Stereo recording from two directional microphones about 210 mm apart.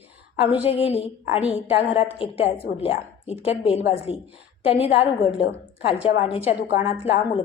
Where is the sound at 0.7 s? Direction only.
30° left (ahead or behind).